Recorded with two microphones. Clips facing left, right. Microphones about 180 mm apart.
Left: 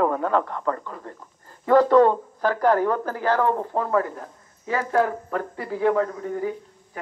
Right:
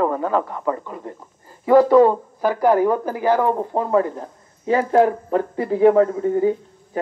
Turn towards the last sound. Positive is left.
turn(degrees=-25)  # may be behind; listen again after turning